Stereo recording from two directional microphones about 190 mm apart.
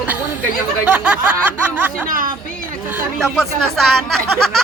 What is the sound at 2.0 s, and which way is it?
Speech, 45° right (ahead or behind).